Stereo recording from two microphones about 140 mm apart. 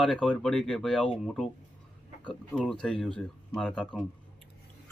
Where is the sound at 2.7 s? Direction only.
5° left (ahead or behind).